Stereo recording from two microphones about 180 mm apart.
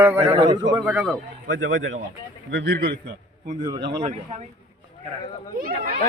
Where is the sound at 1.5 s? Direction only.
90° right.